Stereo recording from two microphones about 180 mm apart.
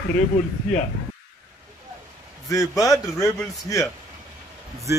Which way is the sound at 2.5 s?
20° left (ahead or behind).